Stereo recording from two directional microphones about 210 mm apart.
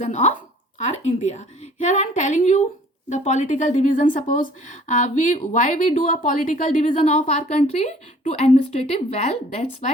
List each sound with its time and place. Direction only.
0.0 s a woman's voice: 35° left (ahead or behind)